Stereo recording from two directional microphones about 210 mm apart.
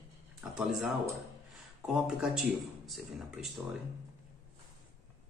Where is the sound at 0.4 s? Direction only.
Centre (ahead or behind).